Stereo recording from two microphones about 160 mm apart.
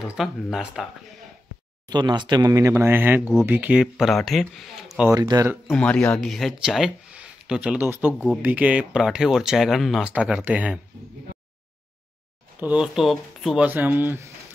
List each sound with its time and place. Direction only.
0.0 s speech: 5° right (ahead or behind)
1.9 s speech: 25° right (ahead or behind); by 5.1 s 5° right (ahead or behind)
5.1 s speech: 20° right (ahead or behind)
5.7 s speech: 5° left (ahead or behind); by 10.8 s 10° right (ahead or behind)
12.5 s speech: 10° right (ahead or behind)